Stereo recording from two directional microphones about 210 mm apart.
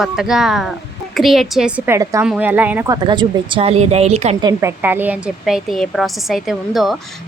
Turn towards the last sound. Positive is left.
turn(degrees=0)  # may be behind; listen again after turning